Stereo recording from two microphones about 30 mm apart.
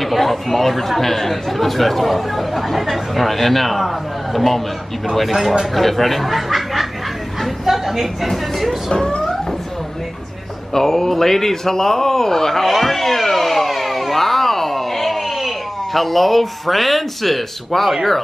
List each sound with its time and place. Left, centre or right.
0.0 s speech: centre
7.6 s a sound: centre
8.3 s speech: centre
8.9 s speech: left
10.7 s a man's voice: centre
12.6 s a sound: centre
15.9 s speech: centre